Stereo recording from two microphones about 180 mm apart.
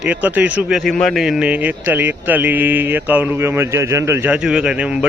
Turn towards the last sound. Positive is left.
turn(degrees=-5)  # may be behind; listen again after turning